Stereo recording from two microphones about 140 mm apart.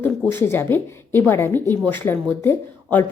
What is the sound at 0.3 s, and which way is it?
Speech, 15° left (ahead or behind).